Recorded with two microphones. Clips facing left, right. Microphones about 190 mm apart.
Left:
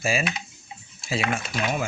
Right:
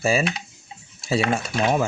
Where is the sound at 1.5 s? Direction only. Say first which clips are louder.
Right 8 dB; 40° right (ahead or behind).